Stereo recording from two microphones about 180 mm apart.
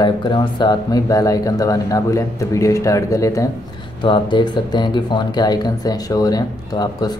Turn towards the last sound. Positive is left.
turn(degrees=20)  # may be behind; listen again after turning